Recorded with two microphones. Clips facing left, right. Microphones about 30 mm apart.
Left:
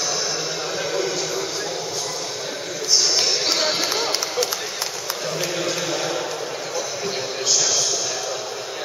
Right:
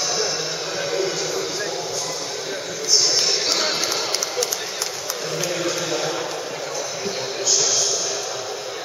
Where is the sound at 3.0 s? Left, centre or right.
Centre.